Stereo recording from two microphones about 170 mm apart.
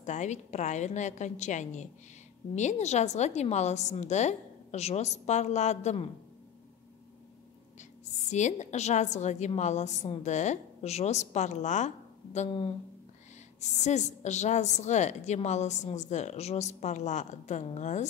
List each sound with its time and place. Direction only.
0.0 s a woman's voice: 45° left (ahead or behind)
8.0 s a woman's voice: 45° left (ahead or behind)
12.4 s speech: 30° left (ahead or behind)
13.6 s a woman's voice: 45° left (ahead or behind)